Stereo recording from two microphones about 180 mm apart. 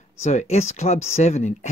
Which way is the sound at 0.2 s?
40° left (ahead or behind).